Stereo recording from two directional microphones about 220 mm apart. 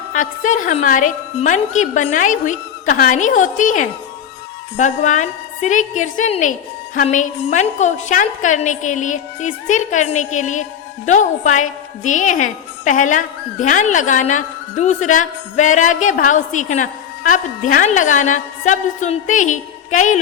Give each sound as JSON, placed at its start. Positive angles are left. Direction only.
{"t": 0.1, "sound": "a woman's voice", "side_deg": 35}